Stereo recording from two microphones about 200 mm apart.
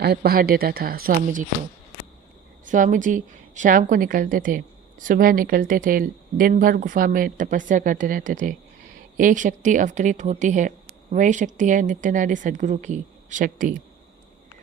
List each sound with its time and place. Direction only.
0.0 s a woman's voice: 50° right (ahead or behind)
2.6 s a woman's voice: 40° right (ahead or behind)